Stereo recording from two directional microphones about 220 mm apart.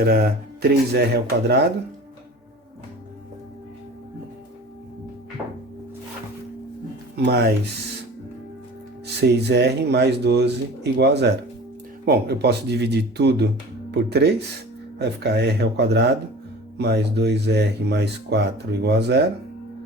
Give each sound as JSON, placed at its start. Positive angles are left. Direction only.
{"t": 0.0, "sound": "speech", "side_deg": -45}
{"t": 7.3, "sound": "speech", "side_deg": -45}
{"t": 9.2, "sound": "speech", "side_deg": -50}